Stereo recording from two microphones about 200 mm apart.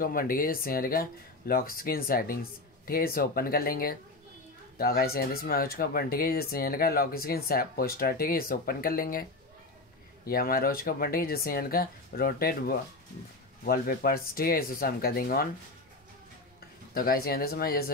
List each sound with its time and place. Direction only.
0.0 s speech: 45° left (ahead or behind)
10.2 s speech: 50° left (ahead or behind)
16.9 s speech: 45° left (ahead or behind)